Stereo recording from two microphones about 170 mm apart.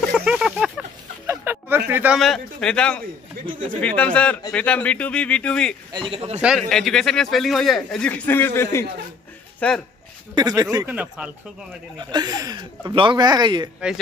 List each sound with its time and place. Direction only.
0.1 s a sound: 5° right (ahead or behind)
1.2 s a sound: 15° right (ahead or behind)
1.9 s speech: 10° right (ahead or behind)
2.1 s a man's voice: centre (ahead or behind)
5.9 s a man's voice: 35° right (ahead or behind)
6.4 s a man's voice: centre (ahead or behind)
10.3 s speech: 25° right (ahead or behind)
10.9 s speech: 5° right (ahead or behind)
12.0 s speech: 25° right (ahead or behind)